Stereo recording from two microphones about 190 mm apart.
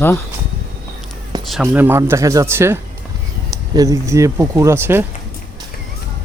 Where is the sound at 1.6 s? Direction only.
10° right (ahead or behind).